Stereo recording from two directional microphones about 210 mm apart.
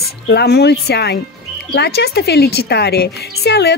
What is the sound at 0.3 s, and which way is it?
A woman's voice, 50° left (ahead or behind).